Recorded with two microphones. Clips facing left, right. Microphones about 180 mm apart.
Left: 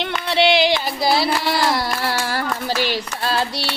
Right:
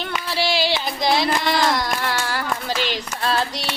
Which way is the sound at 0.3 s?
65° left (ahead or behind).